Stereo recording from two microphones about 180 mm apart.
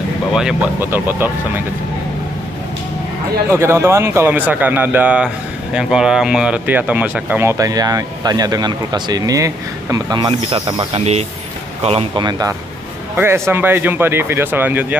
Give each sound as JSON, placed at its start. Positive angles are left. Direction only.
{"t": 0.3, "sound": "speech", "side_deg": -5}
{"t": 3.5, "sound": "speech", "side_deg": -15}